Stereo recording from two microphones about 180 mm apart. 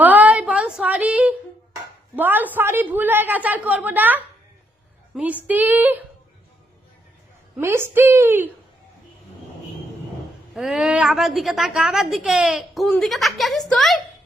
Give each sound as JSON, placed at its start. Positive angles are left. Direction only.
{"t": 0.0, "sound": "a sound", "side_deg": -10}
{"t": 2.1, "sound": "a woman's voice", "side_deg": -10}
{"t": 7.6, "sound": "a woman's voice", "side_deg": -15}
{"t": 10.5, "sound": "a woman's voice", "side_deg": -5}